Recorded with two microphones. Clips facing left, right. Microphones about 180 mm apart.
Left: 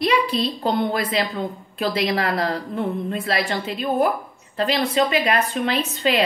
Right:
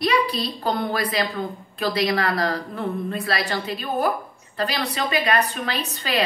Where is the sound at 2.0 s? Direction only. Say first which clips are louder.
Left 1 dB; 30° left (ahead or behind).